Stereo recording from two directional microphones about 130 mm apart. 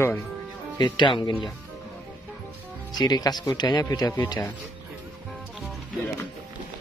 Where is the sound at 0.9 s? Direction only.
40° left (ahead or behind).